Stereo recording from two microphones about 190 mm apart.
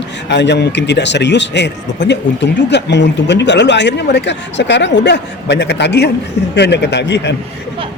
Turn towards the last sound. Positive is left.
turn(degrees=65)  # may be behind; listen again after turning